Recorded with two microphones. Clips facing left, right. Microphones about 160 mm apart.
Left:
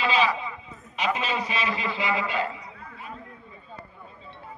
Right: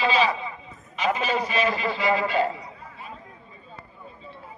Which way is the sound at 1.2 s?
40° right (ahead or behind).